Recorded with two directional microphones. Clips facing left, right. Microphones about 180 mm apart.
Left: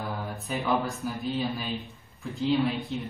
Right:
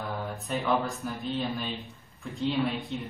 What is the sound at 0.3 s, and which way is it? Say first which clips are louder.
Speech: even; centre (ahead or behind).